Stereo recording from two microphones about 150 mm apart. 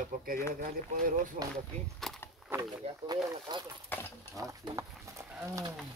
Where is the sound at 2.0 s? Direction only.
Centre (ahead or behind).